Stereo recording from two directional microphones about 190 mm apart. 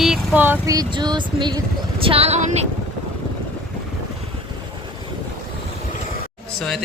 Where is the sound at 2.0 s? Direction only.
30° right (ahead or behind).